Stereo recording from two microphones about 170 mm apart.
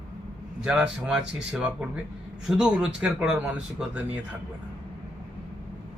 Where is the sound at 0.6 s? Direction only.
5° right (ahead or behind).